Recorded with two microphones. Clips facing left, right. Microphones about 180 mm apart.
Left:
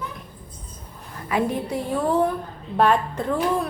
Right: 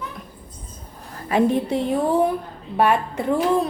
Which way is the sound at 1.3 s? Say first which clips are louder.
Right 5 dB; 25° right (ahead or behind).